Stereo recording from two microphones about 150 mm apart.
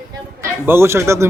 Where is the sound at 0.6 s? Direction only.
15° right (ahead or behind).